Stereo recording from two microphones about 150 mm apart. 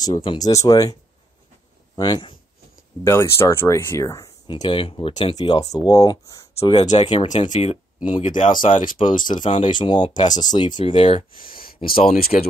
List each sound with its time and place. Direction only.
0.0 s speech: 30° left (ahead or behind)
2.0 s speech: 30° left (ahead or behind)
3.0 s speech: 15° left (ahead or behind)
4.5 s speech: 35° left (ahead or behind)
5.4 s speech: 30° left (ahead or behind)
6.6 s speech: 45° left (ahead or behind)
7.0 s speech: 35° left (ahead or behind)
7.2 s speech: 55° left (ahead or behind)
8.2 s speech: 60° left (ahead or behind)
9.0 s speech: 40° left (ahead or behind)
11.4 s speech: 75° left (ahead or behind)